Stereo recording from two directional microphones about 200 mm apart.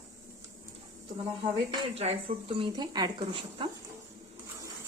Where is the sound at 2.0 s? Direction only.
30° right (ahead or behind).